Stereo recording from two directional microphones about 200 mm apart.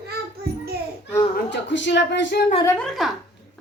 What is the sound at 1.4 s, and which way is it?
Speech, 65° left (ahead or behind).